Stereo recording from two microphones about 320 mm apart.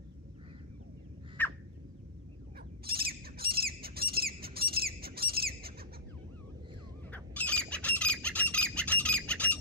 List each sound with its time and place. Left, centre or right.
1.4 s bird: centre
2.8 s squawk: right
7.1 s squawk: centre